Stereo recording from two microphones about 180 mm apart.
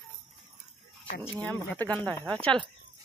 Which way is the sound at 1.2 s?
10° left (ahead or behind).